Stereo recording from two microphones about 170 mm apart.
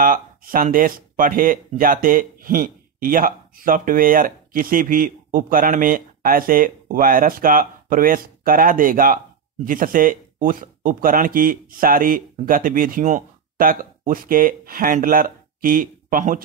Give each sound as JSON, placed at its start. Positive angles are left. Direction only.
{"t": 0.0, "sound": "speech", "side_deg": -55}